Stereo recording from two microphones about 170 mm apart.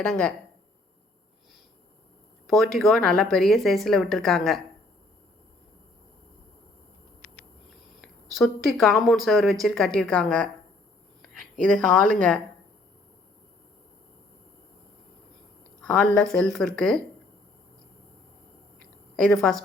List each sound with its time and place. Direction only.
0.1 s speech: 5° left (ahead or behind)
2.5 s speech: centre (ahead or behind)
8.0 s a woman's voice: centre (ahead or behind)
15.8 s speech: 5° left (ahead or behind)
19.1 s a woman's voice: 5° left (ahead or behind)